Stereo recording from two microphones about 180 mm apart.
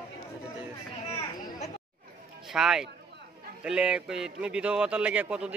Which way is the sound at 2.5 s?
5° right (ahead or behind).